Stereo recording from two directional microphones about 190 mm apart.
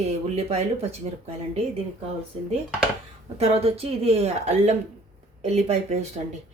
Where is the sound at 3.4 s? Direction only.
30° right (ahead or behind).